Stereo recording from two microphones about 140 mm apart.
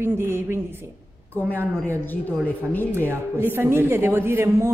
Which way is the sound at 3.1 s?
15° right (ahead or behind).